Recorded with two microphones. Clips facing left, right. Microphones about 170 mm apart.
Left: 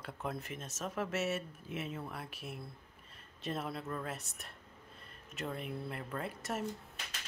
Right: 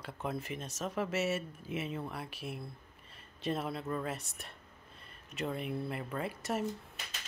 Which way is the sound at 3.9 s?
Centre (ahead or behind).